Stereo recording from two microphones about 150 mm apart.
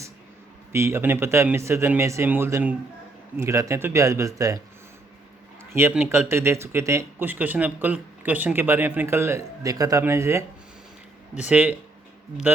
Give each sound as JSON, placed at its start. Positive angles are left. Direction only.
{"t": 0.7, "sound": "a man's voice", "side_deg": -15}
{"t": 5.7, "sound": "a man's voice", "side_deg": -15}